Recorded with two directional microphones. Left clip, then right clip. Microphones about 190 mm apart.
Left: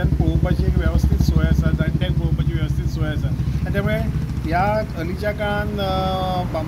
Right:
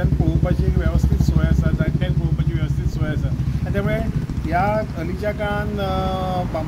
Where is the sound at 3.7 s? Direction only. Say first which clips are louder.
Even; centre (ahead or behind).